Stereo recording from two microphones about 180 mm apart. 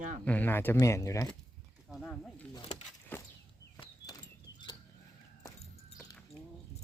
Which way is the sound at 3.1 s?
10° left (ahead or behind).